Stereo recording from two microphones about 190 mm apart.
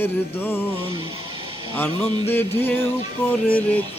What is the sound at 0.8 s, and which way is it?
Speech, 25° right (ahead or behind).